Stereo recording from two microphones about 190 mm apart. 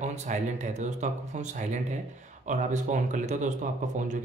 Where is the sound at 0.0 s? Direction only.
35° right (ahead or behind).